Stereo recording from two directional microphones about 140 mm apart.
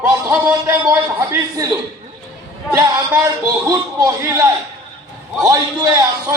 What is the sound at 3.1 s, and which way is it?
A man's voice, 25° right (ahead or behind).